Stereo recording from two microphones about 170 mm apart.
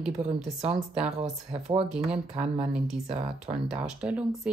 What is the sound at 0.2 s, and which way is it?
Speech, 40° right (ahead or behind).